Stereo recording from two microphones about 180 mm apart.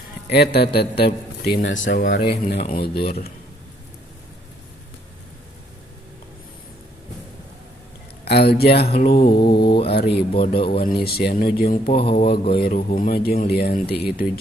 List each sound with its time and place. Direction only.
0.3 s speech: 65° left (ahead or behind)
8.3 s speech: 60° left (ahead or behind)
9.7 s speech: 30° left (ahead or behind)
9.9 s speech: 65° left (ahead or behind)
10.3 s speech: 30° left (ahead or behind)
10.8 s speech: 55° left (ahead or behind)
11.9 s speech: 30° left (ahead or behind)
12.7 s a man's voice: 50° left (ahead or behind)